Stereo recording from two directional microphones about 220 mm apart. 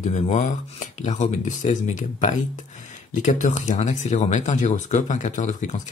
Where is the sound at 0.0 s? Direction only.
30° left (ahead or behind).